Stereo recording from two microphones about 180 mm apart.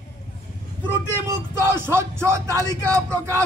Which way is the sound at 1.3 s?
15° right (ahead or behind).